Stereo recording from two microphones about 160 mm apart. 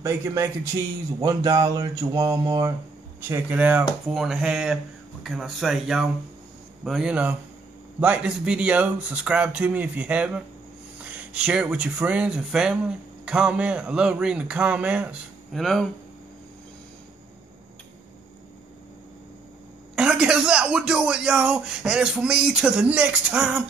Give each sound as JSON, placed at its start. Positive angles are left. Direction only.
{"t": 0.0, "sound": "mantra", "side_deg": -20}
{"t": 3.2, "sound": "speech", "side_deg": -15}
{"t": 20.0, "sound": "speech", "side_deg": -5}